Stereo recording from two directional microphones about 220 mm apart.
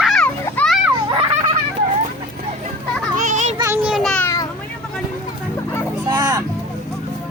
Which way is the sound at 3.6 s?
5° right (ahead or behind).